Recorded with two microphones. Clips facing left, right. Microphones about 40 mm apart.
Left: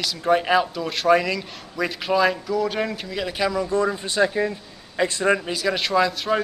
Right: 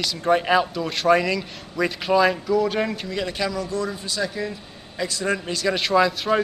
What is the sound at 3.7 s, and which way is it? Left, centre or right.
A man's voice, left.